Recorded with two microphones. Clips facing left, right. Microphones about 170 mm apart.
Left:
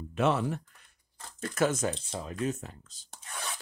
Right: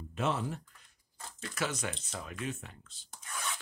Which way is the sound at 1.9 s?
30° left (ahead or behind).